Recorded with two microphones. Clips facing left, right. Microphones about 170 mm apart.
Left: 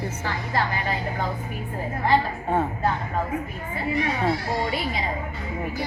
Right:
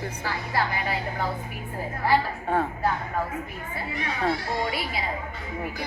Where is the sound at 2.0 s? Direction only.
Centre (ahead or behind).